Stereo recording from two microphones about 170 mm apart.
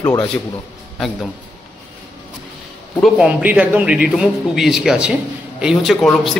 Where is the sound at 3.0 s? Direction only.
5° right (ahead or behind).